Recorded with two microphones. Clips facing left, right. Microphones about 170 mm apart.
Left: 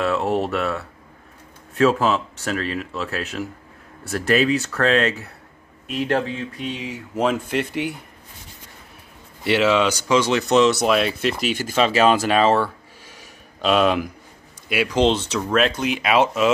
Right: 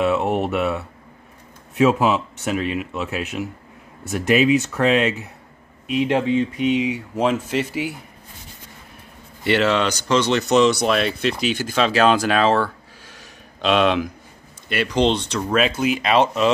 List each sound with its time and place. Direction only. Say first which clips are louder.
0.2 s speech: even; centre (ahead or behind)
0.5 s speech: right 2 dB; 15° right (ahead or behind)
1.9 s speech: right 1 dB; 10° right (ahead or behind)
9.4 s speech: left 1 dB; 5° left (ahead or behind)